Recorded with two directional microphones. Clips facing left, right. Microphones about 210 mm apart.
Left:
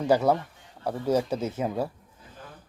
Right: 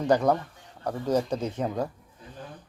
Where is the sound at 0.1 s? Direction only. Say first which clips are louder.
Left 1 dB; 5° left (ahead or behind).